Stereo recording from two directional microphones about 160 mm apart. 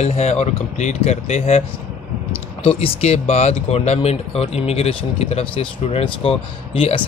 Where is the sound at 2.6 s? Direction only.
35° left (ahead or behind).